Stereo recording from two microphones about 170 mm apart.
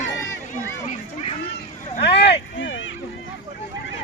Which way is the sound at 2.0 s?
90° left.